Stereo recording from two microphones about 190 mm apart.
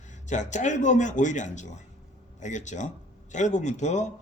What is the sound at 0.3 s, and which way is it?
Speech, 40° left (ahead or behind).